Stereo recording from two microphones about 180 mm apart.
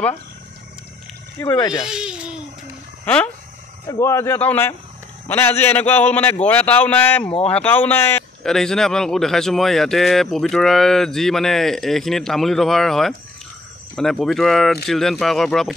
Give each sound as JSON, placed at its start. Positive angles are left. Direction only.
{"t": 1.4, "sound": "speech", "side_deg": 20}
{"t": 1.9, "sound": "a man's voice", "side_deg": -5}
{"t": 3.1, "sound": "a man's voice", "side_deg": 10}